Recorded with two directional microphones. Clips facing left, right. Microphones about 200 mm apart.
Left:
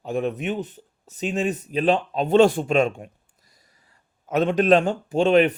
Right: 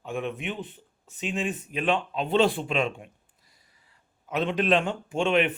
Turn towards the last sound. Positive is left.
turn(degrees=40)  # may be behind; listen again after turning